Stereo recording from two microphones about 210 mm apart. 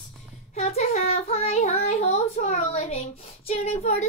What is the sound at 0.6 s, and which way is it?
Child singing, 30° left (ahead or behind).